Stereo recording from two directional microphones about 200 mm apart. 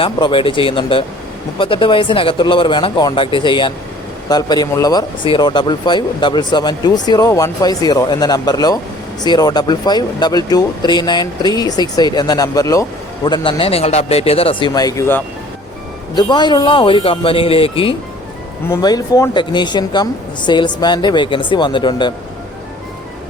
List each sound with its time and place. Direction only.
0.0 s speech: 25° left (ahead or behind)